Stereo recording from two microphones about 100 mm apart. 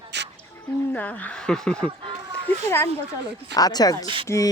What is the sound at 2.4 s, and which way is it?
Speech, 25° left (ahead or behind).